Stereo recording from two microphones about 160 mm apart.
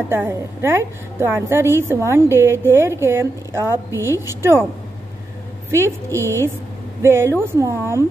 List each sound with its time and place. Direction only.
0.1 s a woman's voice: 15° right (ahead or behind)
5.7 s a woman's voice: 15° right (ahead or behind)